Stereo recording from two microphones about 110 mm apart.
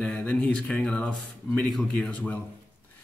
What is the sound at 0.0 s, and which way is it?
Speech, 10° left (ahead or behind).